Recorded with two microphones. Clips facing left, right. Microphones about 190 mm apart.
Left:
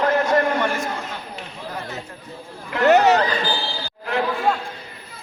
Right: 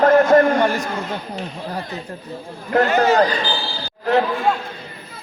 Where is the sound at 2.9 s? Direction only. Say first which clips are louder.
Left 8 dB; 70° left (ahead or behind).